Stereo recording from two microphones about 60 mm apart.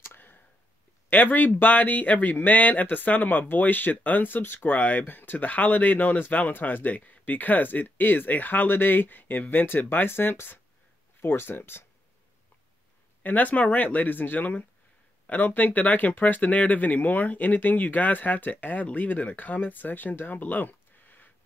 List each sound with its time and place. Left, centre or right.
0.0 s a sound: left
1.1 s speech: left
13.2 s speech: left